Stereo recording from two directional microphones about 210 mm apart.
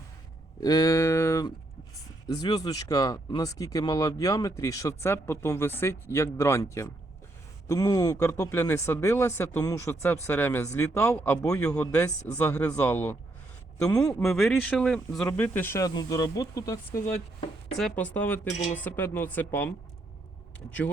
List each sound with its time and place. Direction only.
0.6 s a sound: 20° left (ahead or behind)
2.2 s speech: 20° left (ahead or behind)
14.3 s speech: centre (ahead or behind); by 17.0 s 15° left (ahead or behind)
17.7 s speech: 5° left (ahead or behind)